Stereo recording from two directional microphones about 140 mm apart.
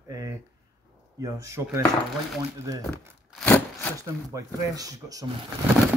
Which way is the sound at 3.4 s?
15° left (ahead or behind).